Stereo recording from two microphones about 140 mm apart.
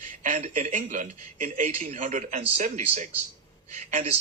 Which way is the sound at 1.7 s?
55° right (ahead or behind).